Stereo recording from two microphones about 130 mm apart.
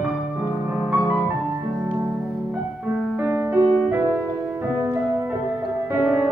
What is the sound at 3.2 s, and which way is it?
Music, 15° right (ahead or behind).